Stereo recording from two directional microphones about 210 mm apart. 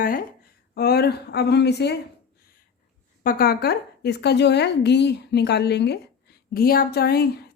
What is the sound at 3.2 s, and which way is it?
A woman's voice, 45° left (ahead or behind).